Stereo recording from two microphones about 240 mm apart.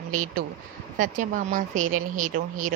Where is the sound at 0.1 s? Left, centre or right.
Right.